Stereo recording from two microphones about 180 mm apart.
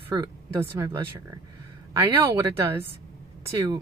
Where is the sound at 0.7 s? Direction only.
15° right (ahead or behind).